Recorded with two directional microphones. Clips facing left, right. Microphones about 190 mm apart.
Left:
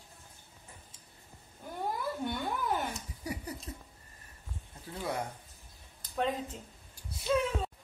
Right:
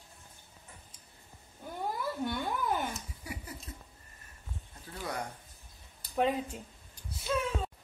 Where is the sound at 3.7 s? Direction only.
35° left (ahead or behind).